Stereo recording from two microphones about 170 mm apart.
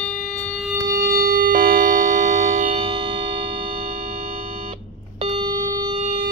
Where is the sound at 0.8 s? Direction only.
15° right (ahead or behind).